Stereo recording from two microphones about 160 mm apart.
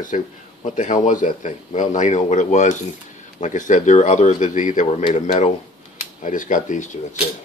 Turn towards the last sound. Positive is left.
turn(degrees=50)  # may be behind; listen again after turning